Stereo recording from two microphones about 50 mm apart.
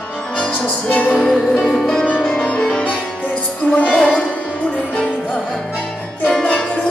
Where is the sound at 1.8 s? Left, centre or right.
Left.